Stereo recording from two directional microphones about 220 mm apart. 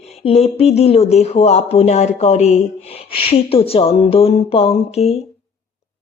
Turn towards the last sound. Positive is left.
turn(degrees=25)  # may be behind; listen again after turning